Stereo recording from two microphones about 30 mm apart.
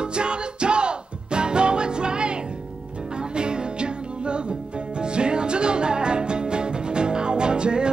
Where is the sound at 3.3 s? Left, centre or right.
Right.